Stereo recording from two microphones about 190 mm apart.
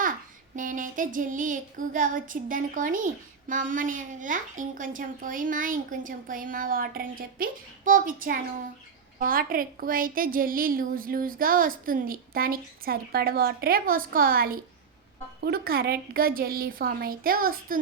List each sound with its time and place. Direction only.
0.5 s a woman's voice: 45° right (ahead or behind)